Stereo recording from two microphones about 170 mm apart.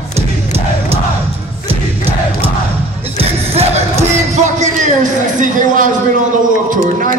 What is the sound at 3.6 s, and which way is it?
Music, 40° right (ahead or behind).